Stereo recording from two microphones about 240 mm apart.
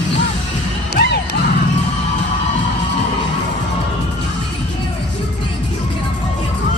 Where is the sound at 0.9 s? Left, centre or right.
Left.